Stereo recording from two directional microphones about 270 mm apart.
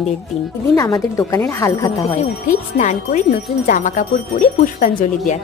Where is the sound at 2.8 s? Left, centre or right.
Left.